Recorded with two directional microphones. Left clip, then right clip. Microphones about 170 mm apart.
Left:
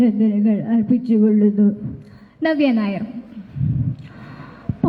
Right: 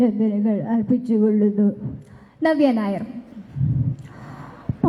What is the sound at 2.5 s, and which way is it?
Speech, 25° left (ahead or behind).